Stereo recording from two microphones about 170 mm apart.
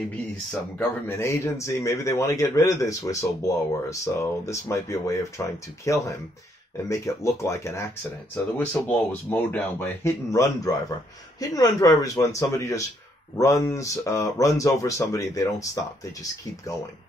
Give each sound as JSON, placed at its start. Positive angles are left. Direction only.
{"t": 0.5, "sound": "speech", "side_deg": 10}